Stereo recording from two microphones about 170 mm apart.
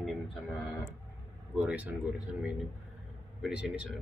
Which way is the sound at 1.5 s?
10° right (ahead or behind).